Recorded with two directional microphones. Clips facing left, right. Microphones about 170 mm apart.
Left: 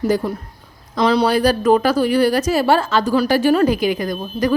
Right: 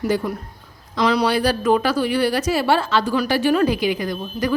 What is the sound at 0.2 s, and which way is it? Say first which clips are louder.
A woman's voice: left 2 dB; 30° left (ahead or behind).